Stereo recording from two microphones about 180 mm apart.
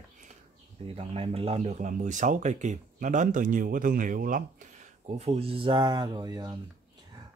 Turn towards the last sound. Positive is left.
turn(degrees=-20)  # may be behind; listen again after turning